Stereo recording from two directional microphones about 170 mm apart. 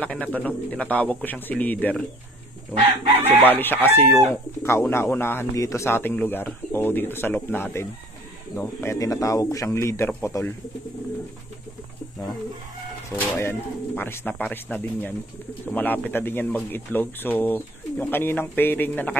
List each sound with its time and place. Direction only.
0.0 s speech: 10° left (ahead or behind)
3.3 s speech: 10° left (ahead or behind)
13.1 s speech: 15° left (ahead or behind)